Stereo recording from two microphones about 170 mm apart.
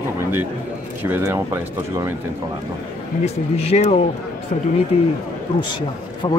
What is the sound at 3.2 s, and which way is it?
Speech, 40° left (ahead or behind).